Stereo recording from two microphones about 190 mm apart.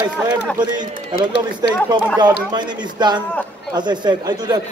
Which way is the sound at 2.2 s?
25° right (ahead or behind).